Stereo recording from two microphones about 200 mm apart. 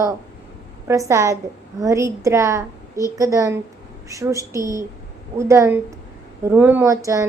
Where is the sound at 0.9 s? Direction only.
15° right (ahead or behind).